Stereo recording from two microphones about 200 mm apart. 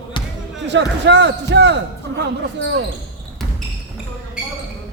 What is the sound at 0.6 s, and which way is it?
A man's voice, 60° right (ahead or behind).